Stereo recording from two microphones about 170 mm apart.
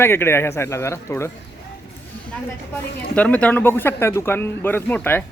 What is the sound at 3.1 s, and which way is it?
Speech, 10° left (ahead or behind).